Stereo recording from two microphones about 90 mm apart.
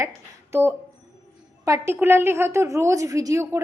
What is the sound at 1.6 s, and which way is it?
A woman's voice, 35° right (ahead or behind).